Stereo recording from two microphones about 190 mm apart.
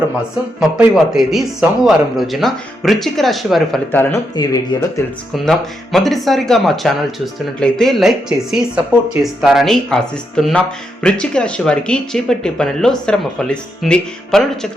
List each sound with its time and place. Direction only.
0.8 s speech: centre (ahead or behind)
3.9 s speech: 15° left (ahead or behind)
5.5 s speech: centre (ahead or behind)